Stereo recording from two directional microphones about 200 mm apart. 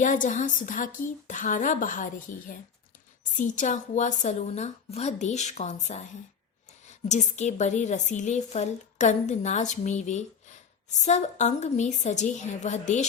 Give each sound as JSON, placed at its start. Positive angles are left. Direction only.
{"t": 0.0, "sound": "a woman's voice", "side_deg": 40}